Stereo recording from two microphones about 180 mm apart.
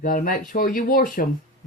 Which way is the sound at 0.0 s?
50° left (ahead or behind).